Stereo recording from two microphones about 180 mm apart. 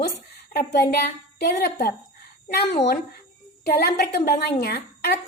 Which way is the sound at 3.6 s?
60° left (ahead or behind).